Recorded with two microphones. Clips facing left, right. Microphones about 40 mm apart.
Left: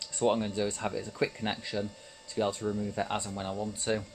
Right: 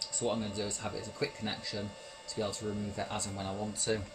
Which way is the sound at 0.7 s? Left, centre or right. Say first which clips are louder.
Left 5 dB; left.